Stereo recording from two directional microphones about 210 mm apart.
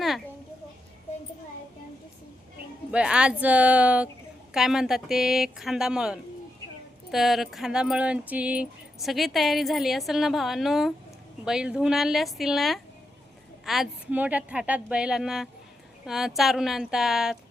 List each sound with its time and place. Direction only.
2.9 s speech: 5° right (ahead or behind)